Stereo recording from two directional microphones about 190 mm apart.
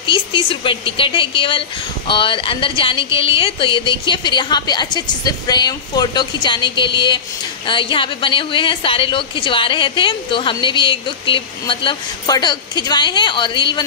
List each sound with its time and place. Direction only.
0.0 s a woman's voice: 25° left (ahead or behind)